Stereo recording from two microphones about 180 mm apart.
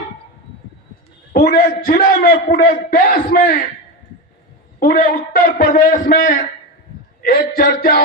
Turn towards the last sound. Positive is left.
turn(degrees=55)  # may be behind; listen again after turning